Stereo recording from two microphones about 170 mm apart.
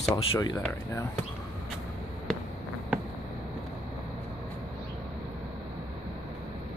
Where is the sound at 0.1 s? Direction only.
25° left (ahead or behind).